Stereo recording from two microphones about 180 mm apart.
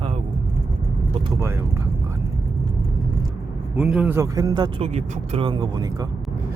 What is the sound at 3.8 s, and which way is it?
Speech, 5° right (ahead or behind).